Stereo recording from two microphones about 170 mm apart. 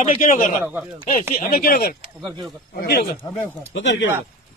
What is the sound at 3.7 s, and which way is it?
Speech, 90° left.